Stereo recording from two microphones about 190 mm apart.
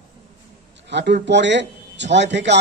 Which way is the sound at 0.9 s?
65° right (ahead or behind).